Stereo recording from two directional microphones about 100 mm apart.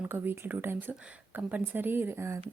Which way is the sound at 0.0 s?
20° right (ahead or behind).